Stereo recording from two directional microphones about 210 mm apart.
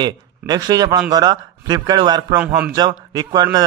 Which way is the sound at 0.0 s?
20° right (ahead or behind).